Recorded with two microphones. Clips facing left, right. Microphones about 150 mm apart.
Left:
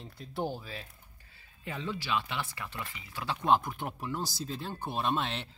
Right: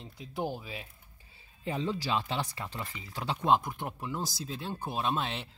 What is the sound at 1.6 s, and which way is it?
Speech, 30° right (ahead or behind).